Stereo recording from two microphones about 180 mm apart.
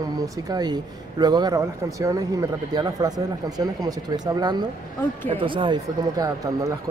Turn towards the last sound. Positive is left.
turn(degrees=-20)  # may be behind; listen again after turning